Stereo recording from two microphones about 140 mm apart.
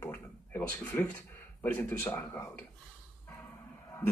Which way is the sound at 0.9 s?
15° left (ahead or behind).